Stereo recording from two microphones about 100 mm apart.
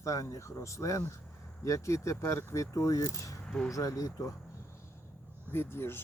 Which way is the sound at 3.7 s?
35° left (ahead or behind).